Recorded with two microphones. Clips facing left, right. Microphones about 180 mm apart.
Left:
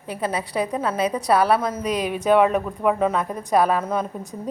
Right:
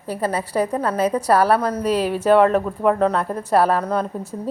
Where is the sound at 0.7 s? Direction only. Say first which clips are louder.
Right 2 dB; 10° left (ahead or behind).